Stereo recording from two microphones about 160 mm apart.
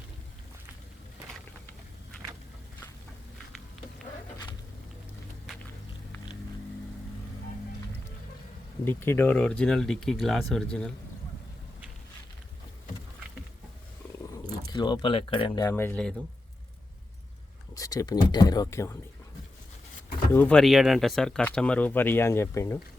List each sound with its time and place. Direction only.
8.8 s speech: 15° left (ahead or behind)
14.7 s speech: 25° left (ahead or behind)
15.7 s speech: 10° left (ahead or behind)
17.7 s speech: 20° left (ahead or behind)
20.3 s speech: 10° left (ahead or behind)